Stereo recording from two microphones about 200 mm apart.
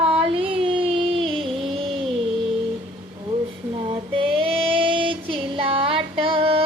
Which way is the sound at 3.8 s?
25° right (ahead or behind).